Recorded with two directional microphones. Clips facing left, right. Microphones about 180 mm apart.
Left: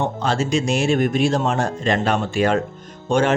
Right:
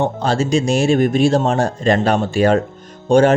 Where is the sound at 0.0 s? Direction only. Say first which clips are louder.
Right 4 dB; 35° right (ahead or behind).